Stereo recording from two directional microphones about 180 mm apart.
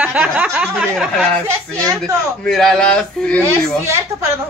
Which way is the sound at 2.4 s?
Centre (ahead or behind).